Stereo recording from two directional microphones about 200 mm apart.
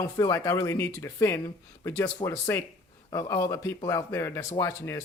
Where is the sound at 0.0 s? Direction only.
15° left (ahead or behind).